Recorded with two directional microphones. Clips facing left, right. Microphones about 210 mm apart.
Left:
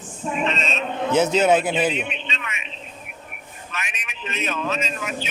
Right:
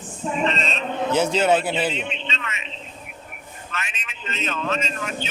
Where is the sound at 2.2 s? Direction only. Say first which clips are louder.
Right 1 dB; 15° left (ahead or behind).